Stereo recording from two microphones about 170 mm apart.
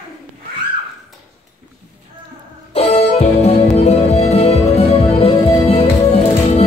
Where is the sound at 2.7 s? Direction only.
35° left (ahead or behind).